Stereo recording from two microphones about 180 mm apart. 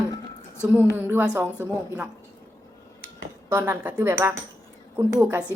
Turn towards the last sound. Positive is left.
turn(degrees=-15)  # may be behind; listen again after turning